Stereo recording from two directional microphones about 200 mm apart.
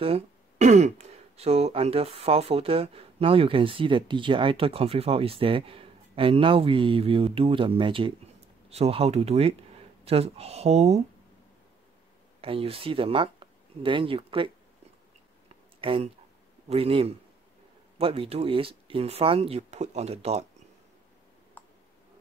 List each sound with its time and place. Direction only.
0.0 s speech: 30° right (ahead or behind)
12.4 s speech: 25° right (ahead or behind)
15.4 s a sound: 30° right (ahead or behind)
16.6 s speech: 30° right (ahead or behind)
21.6 s tick: 10° left (ahead or behind)